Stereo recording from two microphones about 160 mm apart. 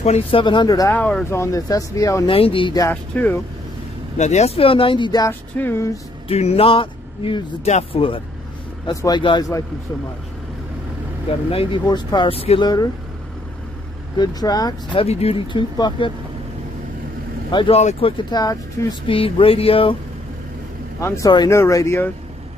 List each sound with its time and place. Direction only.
0.0 s speech: 40° left (ahead or behind); by 0.9 s 20° left (ahead or behind)
0.9 s speech: 10° left (ahead or behind)
2.2 s speech: 35° left (ahead or behind)
2.9 s speech: 10° left (ahead or behind)
4.2 s speech: 45° left (ahead or behind); by 5.3 s 25° left (ahead or behind)
5.6 s speech: 15° left (ahead or behind)
6.2 s speech: 40° left (ahead or behind)
11.2 s speech: 35° left (ahead or behind)
14.1 s speech: 25° left (ahead or behind)
17.5 s speech: 30° left (ahead or behind)
19.0 s speech: 35° left (ahead or behind)
21.0 s speech: 15° left (ahead or behind)